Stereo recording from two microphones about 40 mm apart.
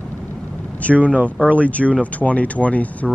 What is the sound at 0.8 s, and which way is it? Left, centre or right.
Speech, left.